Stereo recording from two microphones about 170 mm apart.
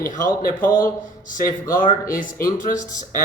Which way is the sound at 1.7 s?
50° left (ahead or behind).